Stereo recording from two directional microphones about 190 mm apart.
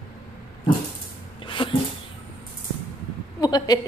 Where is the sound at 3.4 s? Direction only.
20° left (ahead or behind).